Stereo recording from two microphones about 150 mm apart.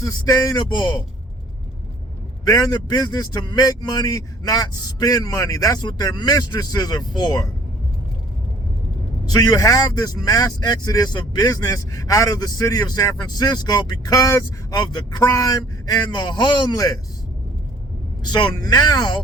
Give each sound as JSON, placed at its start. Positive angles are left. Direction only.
{"t": 0.0, "sound": "speech", "side_deg": 25}
{"t": 2.4, "sound": "speech", "side_deg": 25}
{"t": 9.3, "sound": "speech", "side_deg": 25}
{"t": 18.2, "sound": "speech", "side_deg": 30}